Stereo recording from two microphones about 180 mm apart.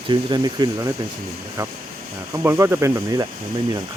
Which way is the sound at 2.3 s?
15° right (ahead or behind).